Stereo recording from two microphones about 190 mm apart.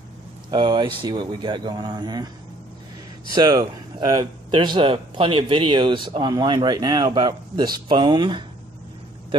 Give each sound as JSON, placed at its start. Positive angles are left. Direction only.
{"t": 0.5, "sound": "speech", "side_deg": -25}
{"t": 3.3, "sound": "speech", "side_deg": -20}